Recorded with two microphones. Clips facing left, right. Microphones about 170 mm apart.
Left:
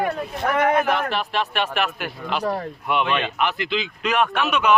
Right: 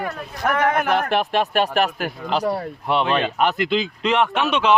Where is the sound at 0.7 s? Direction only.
50° right (ahead or behind).